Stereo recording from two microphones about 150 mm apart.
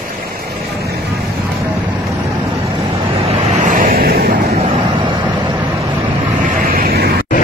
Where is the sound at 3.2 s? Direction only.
45° right (ahead or behind).